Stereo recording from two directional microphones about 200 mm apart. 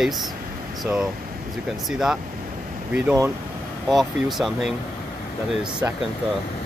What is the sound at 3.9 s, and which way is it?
Speech, centre (ahead or behind).